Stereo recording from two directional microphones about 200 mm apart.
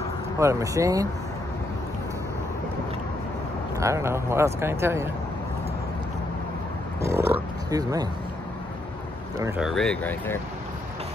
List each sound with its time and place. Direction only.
0.4 s speech: 15° right (ahead or behind)
3.8 s speech: 15° right (ahead or behind)
7.0 s speech: 15° right (ahead or behind)
9.6 s speech: centre (ahead or behind)